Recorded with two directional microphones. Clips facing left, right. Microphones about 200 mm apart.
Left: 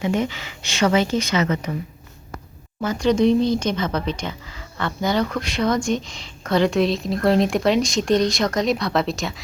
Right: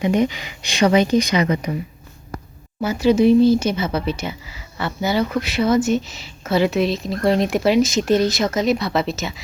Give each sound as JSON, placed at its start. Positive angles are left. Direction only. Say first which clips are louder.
{"t": 0.0, "sound": "speech", "louder": "right 4 dB", "side_deg": -15}
{"t": 2.8, "sound": "speech", "louder": "right 3 dB", "side_deg": -10}